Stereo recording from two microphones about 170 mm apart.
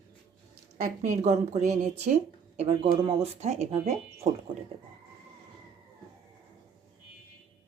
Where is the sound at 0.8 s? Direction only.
45° right (ahead or behind).